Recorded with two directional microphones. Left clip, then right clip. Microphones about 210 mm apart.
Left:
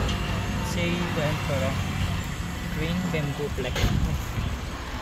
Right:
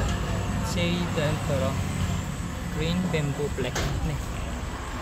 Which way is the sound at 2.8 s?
10° right (ahead or behind).